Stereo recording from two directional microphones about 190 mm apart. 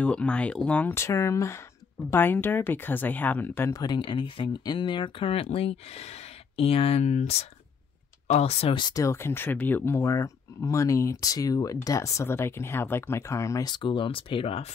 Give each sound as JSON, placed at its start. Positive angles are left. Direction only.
{"t": 0.0, "sound": "speech", "side_deg": 5}